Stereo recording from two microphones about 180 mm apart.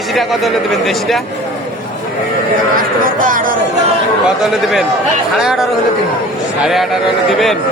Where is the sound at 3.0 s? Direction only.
50° right (ahead or behind).